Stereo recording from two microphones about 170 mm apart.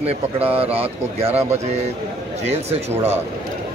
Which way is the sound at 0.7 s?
40° right (ahead or behind).